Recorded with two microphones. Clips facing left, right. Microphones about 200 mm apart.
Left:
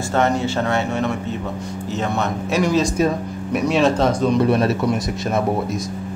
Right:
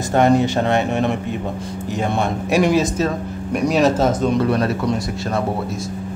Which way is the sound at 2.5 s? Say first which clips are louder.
Right 3 dB; 15° right (ahead or behind).